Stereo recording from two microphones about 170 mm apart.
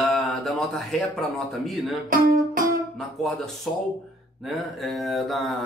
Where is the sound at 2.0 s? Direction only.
55° right (ahead or behind).